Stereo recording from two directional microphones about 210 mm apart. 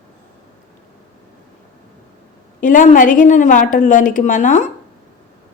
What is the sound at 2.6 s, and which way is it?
A woman's voice, 40° left (ahead or behind).